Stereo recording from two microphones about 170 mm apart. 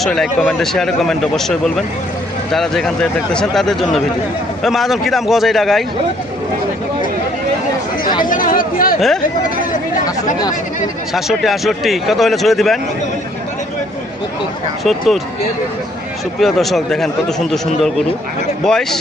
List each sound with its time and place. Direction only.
0.0 s speech: centre (ahead or behind)
8.2 s speech: 55° left (ahead or behind)
11.1 s speech: centre (ahead or behind)
14.8 s speech: centre (ahead or behind)
16.4 s speech: centre (ahead or behind)
18.6 s speech: centre (ahead or behind)